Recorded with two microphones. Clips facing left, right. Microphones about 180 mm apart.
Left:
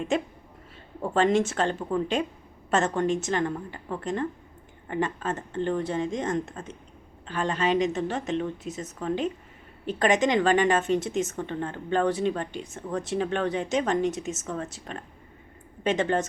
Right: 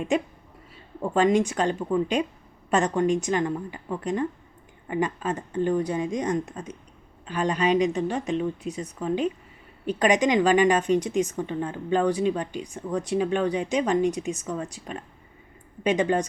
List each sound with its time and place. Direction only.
1.0 s speech: 15° right (ahead or behind)